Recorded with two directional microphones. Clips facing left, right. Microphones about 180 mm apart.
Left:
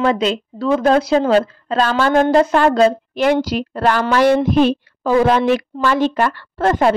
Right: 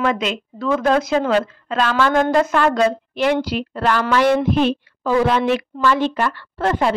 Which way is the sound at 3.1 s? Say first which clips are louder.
Left 3 dB; 40° left (ahead or behind).